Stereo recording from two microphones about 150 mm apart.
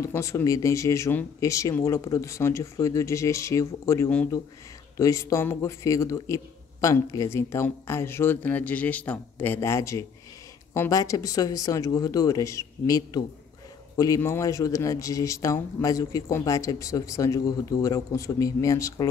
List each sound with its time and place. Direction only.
0.0 s a man's voice: 20° left (ahead or behind)